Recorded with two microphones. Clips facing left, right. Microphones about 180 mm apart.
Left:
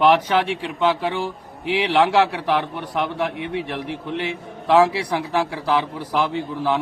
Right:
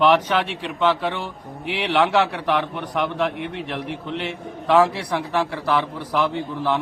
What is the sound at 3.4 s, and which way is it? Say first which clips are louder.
Speech: left 2 dB; 60° right (ahead or behind).